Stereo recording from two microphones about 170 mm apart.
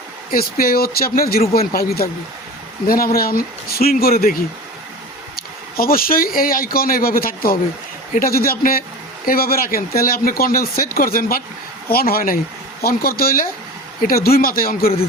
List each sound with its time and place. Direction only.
0.3 s speech: 60° left (ahead or behind)
5.4 s speech: 60° left (ahead or behind)